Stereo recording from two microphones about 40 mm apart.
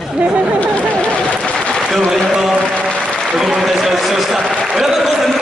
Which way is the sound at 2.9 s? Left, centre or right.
Left.